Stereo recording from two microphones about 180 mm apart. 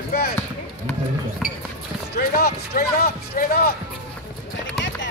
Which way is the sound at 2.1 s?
60° left (ahead or behind).